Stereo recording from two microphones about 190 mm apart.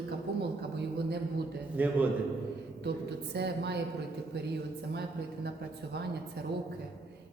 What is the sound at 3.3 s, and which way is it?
Speech, 60° right (ahead or behind).